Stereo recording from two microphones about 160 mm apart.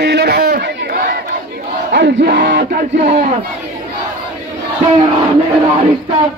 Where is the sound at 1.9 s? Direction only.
90° right.